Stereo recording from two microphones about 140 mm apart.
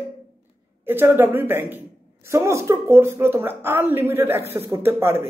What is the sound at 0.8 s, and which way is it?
A woman's voice, 15° right (ahead or behind).